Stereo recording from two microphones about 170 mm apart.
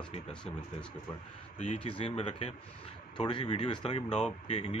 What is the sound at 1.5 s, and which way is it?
Speech, 35° left (ahead or behind).